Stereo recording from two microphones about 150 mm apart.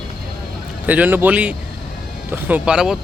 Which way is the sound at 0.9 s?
10° right (ahead or behind).